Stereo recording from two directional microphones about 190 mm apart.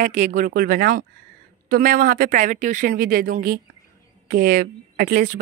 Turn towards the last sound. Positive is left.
turn(degrees=-45)  # may be behind; listen again after turning